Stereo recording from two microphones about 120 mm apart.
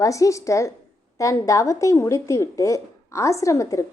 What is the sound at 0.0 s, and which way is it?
A woman's voice, 25° left (ahead or behind).